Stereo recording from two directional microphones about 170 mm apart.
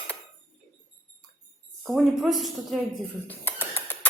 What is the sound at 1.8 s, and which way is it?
Speech, centre (ahead or behind).